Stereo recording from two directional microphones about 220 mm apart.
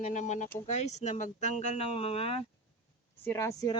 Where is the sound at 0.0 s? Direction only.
35° left (ahead or behind).